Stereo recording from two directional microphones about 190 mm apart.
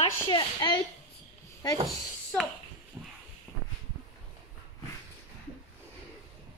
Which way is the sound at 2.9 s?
5° right (ahead or behind).